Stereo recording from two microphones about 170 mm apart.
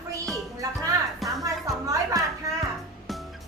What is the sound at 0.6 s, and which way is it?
Music, 20° right (ahead or behind).